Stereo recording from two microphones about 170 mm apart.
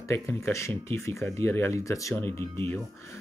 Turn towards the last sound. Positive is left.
turn(degrees=15)  # may be behind; listen again after turning